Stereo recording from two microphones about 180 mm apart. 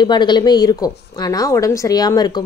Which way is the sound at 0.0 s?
25° left (ahead or behind).